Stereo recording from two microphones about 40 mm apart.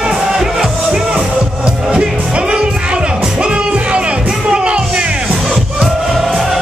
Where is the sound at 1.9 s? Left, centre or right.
Right.